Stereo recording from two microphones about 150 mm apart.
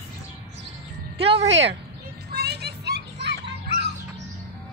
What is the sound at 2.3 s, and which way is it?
Vehicle, 90° right.